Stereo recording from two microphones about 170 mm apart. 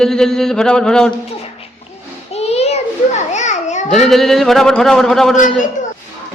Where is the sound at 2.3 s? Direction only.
40° left (ahead or behind).